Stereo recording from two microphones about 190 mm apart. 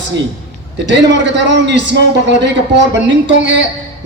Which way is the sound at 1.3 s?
65° right (ahead or behind).